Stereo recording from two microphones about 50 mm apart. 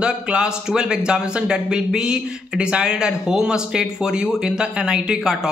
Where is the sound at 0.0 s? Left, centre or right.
Centre.